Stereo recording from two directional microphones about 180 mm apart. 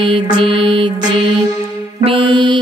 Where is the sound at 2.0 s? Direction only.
30° right (ahead or behind).